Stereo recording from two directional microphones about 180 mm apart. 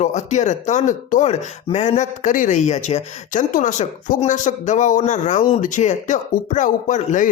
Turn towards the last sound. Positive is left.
turn(degrees=45)  # may be behind; listen again after turning